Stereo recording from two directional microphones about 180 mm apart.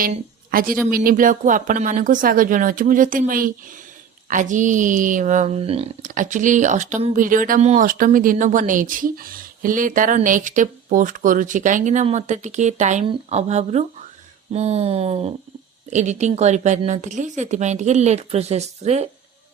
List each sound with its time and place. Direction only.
0.5 s speech: 50° right (ahead or behind); by 5.9 s 35° right (ahead or behind)
6.0 s a woman's voice: 45° right (ahead or behind)